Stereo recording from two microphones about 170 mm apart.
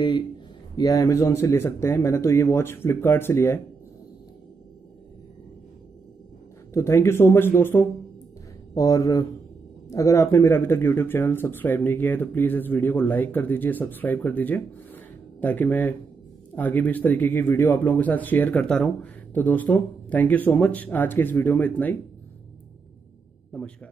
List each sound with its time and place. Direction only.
0.7 s speech: 20° left (ahead or behind)
6.7 s speech: 15° left (ahead or behind)